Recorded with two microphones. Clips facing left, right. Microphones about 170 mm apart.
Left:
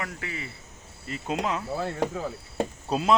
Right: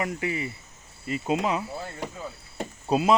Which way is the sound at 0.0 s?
15° right (ahead or behind).